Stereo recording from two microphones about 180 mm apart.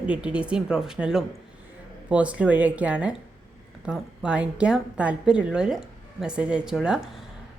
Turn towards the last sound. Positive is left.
turn(degrees=-5)  # may be behind; listen again after turning